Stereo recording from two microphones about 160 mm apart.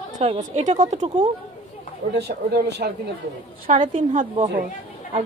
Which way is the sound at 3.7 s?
55° right (ahead or behind).